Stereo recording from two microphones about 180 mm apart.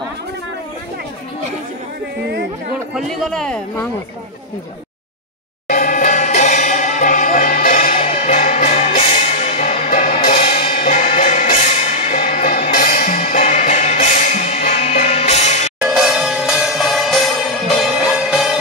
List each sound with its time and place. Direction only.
2.9 s speech: centre (ahead or behind)
5.7 s music: 45° left (ahead or behind)
7.9 s music: 35° left (ahead or behind)
10.4 s music: 35° left (ahead or behind)
10.8 s music: 45° left (ahead or behind)
15.8 s music: 5° right (ahead or behind)